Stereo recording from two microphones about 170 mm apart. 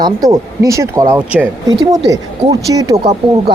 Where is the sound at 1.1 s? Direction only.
10° right (ahead or behind).